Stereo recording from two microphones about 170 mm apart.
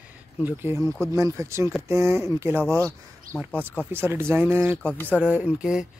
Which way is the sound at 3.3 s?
55° right (ahead or behind).